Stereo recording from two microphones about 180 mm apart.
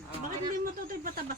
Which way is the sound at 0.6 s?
55° right (ahead or behind).